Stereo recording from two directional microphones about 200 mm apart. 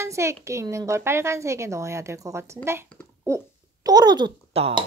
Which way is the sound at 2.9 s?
5° left (ahead or behind).